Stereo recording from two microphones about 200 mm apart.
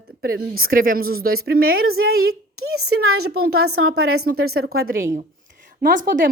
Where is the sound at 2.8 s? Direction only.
90° right.